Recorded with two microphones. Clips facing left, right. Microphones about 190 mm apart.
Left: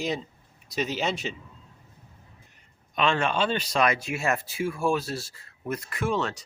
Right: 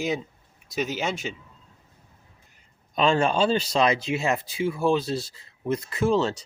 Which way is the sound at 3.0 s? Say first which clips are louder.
Right 4 dB; 35° right (ahead or behind).